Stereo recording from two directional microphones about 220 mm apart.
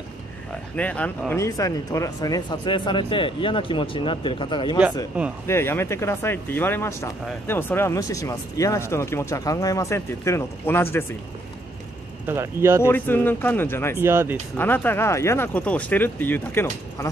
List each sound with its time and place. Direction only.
0.7 s speech: 5° left (ahead or behind); by 4.7 s 20° left (ahead or behind)
5.1 s speech: 5° right (ahead or behind)
5.5 s speech: 10° left (ahead or behind)
12.3 s speech: 10° right (ahead or behind)
12.8 s speech: 10° left (ahead or behind)
13.9 s speech: 10° right (ahead or behind)
14.6 s speech: 10° left (ahead or behind)